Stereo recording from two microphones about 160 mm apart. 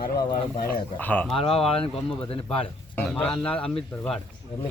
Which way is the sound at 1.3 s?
35° left (ahead or behind).